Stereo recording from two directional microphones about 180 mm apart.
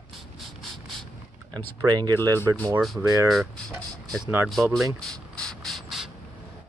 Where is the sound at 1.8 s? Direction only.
20° right (ahead or behind).